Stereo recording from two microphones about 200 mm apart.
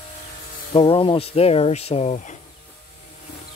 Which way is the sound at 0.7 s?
25° left (ahead or behind).